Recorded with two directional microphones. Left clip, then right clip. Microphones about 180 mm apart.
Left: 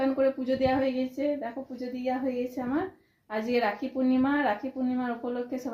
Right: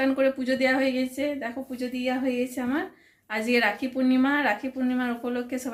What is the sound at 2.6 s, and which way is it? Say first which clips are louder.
A woman's voice: right 2 dB; 10° right (ahead or behind).